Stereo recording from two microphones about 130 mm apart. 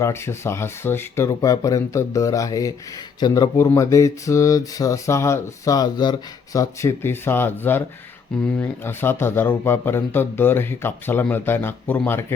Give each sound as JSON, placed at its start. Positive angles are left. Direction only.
{"t": 0.0, "sound": "speech", "side_deg": 20}